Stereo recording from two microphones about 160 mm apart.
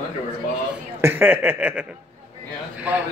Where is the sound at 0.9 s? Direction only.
15° right (ahead or behind).